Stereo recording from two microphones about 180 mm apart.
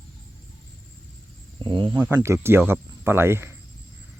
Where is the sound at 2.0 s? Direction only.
10° right (ahead or behind).